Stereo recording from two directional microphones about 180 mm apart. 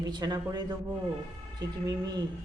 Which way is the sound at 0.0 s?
25° right (ahead or behind).